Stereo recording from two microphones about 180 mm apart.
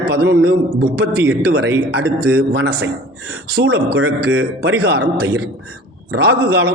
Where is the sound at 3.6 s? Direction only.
70° right (ahead or behind).